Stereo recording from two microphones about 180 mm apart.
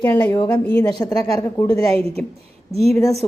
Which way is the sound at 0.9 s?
20° left (ahead or behind).